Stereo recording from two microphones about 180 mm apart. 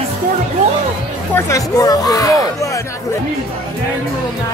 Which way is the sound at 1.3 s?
20° left (ahead or behind).